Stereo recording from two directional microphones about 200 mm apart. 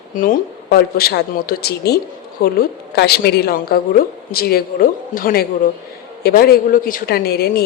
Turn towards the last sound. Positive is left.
turn(degrees=50)  # may be behind; listen again after turning